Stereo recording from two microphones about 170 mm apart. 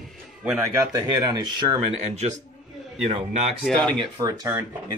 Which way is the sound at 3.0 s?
40° right (ahead or behind).